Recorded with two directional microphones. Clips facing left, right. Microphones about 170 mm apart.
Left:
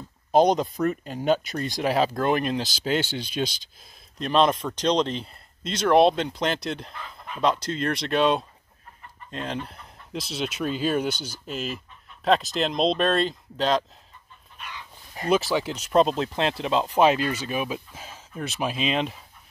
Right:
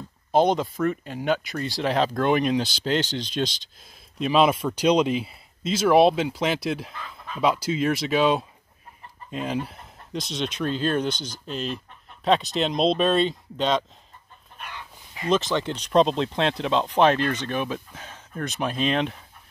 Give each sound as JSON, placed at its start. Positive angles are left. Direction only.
{"t": 0.3, "sound": "speech", "side_deg": 15}
{"t": 4.2, "sound": "speech", "side_deg": -5}
{"t": 9.3, "sound": "chicken", "side_deg": -5}
{"t": 10.1, "sound": "speech", "side_deg": 5}
{"t": 14.6, "sound": "chicken", "side_deg": -55}
{"t": 15.2, "sound": "speech", "side_deg": 10}